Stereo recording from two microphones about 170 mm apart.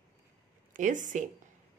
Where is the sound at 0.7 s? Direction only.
50° right (ahead or behind).